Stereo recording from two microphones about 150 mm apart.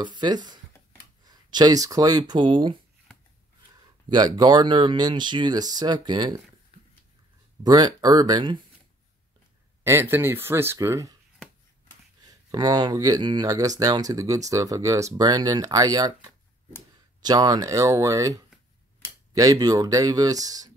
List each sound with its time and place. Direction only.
0.0 s speech: 30° right (ahead or behind)
4.1 s speech: 30° right (ahead or behind)
7.6 s speech: 25° right (ahead or behind)
9.8 s speech: 15° right (ahead or behind)
12.3 s speech: 25° right (ahead or behind)